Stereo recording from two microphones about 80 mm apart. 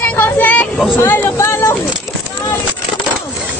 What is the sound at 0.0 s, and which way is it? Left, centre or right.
Vehicle, left.